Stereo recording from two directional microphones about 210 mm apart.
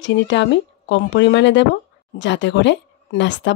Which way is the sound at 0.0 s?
60° left (ahead or behind).